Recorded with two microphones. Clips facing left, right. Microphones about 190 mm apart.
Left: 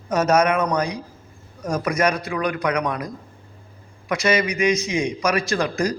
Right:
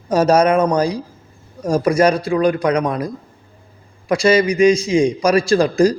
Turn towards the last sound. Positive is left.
turn(degrees=-30)  # may be behind; listen again after turning